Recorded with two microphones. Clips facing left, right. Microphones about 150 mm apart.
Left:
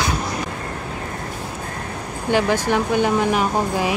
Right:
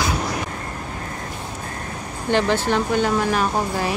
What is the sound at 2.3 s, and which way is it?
Speech, 10° left (ahead or behind).